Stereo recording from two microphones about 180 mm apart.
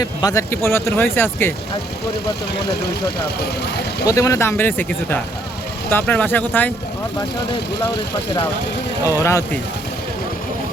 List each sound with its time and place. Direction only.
0.0 s speech: 20° left (ahead or behind)
4.0 s speech: 20° left (ahead or behind)
9.0 s speech: 15° left (ahead or behind)